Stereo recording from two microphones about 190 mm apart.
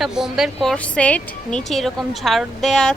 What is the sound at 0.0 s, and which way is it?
Speech, centre (ahead or behind).